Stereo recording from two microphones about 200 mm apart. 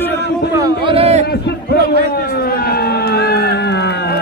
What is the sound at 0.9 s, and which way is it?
Speech, 30° right (ahead or behind).